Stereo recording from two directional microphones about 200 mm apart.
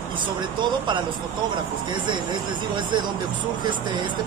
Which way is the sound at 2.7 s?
20° right (ahead or behind).